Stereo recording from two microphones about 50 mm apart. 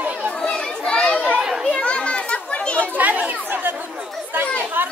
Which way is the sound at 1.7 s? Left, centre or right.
Left.